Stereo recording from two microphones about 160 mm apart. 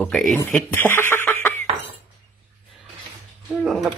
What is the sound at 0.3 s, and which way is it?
Speech, 5° left (ahead or behind).